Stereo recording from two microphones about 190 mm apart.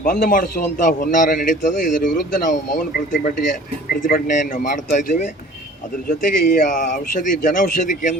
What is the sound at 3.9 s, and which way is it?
A man's voice, 45° left (ahead or behind).